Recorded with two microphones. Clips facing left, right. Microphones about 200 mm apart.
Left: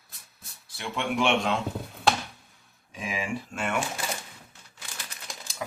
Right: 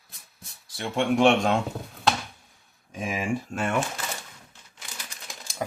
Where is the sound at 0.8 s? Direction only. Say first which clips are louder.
Right 6 dB; 40° right (ahead or behind).